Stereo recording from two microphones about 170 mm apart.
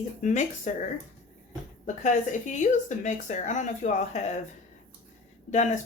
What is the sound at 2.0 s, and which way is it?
Speech, 45° left (ahead or behind).